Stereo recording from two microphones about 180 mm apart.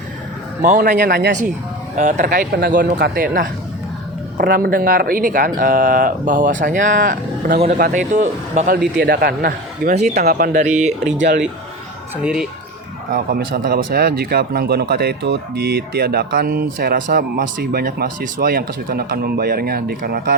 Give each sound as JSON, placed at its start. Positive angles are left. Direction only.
{"t": 0.6, "sound": "speech", "side_deg": -50}
{"t": 2.0, "sound": "speech", "side_deg": -45}
{"t": 9.0, "sound": "speech", "side_deg": -55}
{"t": 9.9, "sound": "speech", "side_deg": -40}
{"t": 10.2, "sound": "speech", "side_deg": -50}
{"t": 11.2, "sound": "speech", "side_deg": -75}
{"t": 12.1, "sound": "speech", "side_deg": -5}
{"t": 13.1, "sound": "speech", "side_deg": -50}